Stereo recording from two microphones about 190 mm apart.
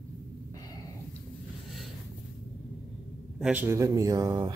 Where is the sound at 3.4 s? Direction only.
10° right (ahead or behind).